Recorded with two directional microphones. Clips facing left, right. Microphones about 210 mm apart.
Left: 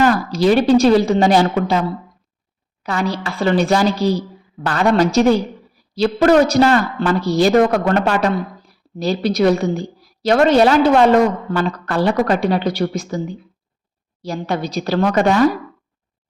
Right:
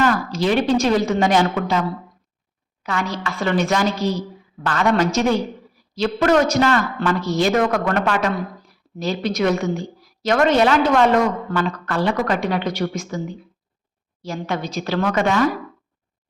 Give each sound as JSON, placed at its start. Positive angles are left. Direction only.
{"t": 0.0, "sound": "a woman's voice", "side_deg": 35}
{"t": 2.8, "sound": "a woman's voice", "side_deg": 35}